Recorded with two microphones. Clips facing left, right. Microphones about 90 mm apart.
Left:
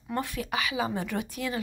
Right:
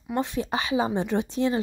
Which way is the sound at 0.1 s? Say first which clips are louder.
Right 4 dB; 20° right (ahead or behind).